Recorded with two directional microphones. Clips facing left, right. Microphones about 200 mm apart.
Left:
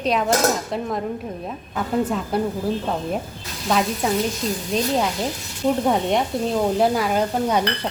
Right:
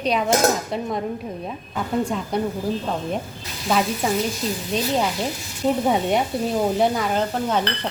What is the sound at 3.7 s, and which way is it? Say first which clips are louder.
A woman's voice: even; centre (ahead or behind).